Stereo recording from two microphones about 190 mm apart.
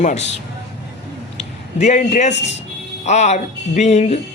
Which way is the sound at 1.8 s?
40° left (ahead or behind).